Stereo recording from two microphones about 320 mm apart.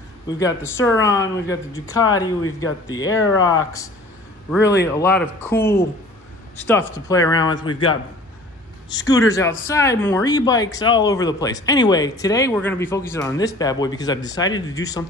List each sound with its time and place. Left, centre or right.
0.3 s speech: centre
3.1 s speech: left
4.9 s speech: centre
8.9 s speech: centre